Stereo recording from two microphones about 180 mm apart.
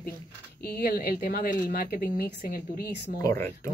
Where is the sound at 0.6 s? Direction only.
55° left (ahead or behind).